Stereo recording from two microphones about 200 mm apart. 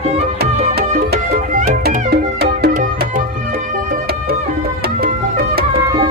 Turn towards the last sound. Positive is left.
turn(degrees=-50)  # may be behind; listen again after turning